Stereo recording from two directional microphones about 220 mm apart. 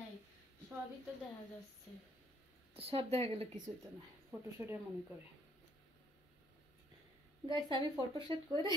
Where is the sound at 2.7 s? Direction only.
25° right (ahead or behind).